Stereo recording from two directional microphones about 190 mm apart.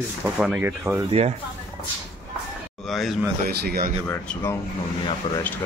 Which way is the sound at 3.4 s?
55° right (ahead or behind).